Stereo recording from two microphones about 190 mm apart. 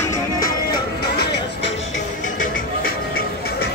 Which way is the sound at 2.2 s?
45° left (ahead or behind).